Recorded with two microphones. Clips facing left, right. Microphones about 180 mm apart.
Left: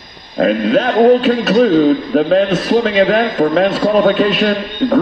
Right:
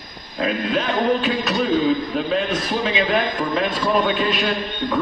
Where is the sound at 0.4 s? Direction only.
55° left (ahead or behind).